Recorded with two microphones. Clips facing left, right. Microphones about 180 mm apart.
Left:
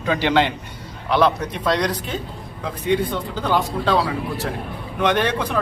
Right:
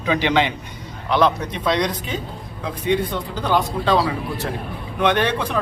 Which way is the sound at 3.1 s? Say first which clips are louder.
Even; 10° right (ahead or behind).